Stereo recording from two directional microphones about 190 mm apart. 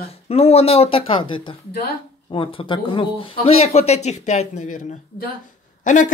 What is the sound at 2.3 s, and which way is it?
Speech, 25° left (ahead or behind).